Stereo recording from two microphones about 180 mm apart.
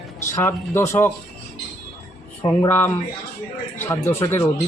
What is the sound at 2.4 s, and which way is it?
Speech, 15° left (ahead or behind).